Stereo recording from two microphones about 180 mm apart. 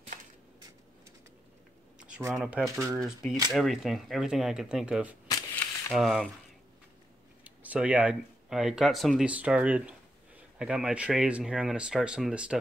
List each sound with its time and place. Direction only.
2.0 s speech: 5° right (ahead or behind)
2.6 s speech: 15° right (ahead or behind)
2.9 s speech: centre (ahead or behind)
7.4 s speech: 10° right (ahead or behind)